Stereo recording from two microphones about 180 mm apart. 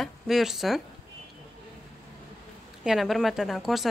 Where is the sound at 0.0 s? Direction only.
Centre (ahead or behind).